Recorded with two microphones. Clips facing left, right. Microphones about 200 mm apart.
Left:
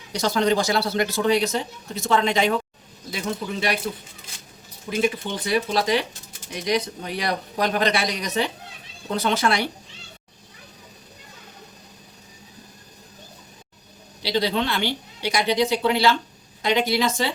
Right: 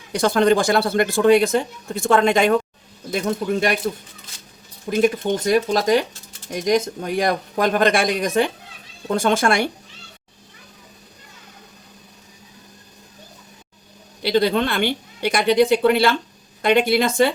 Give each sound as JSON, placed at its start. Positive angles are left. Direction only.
{"t": 0.1, "sound": "speech", "side_deg": -55}
{"t": 4.9, "sound": "speech", "side_deg": -45}
{"t": 14.2, "sound": "speech", "side_deg": -55}